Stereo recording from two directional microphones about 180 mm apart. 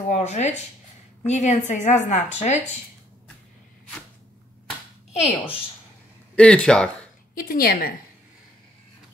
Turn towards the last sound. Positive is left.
turn(degrees=55)  # may be behind; listen again after turning